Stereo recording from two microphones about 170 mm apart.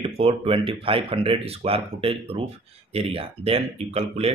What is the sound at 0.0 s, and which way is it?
Speech, 35° right (ahead or behind).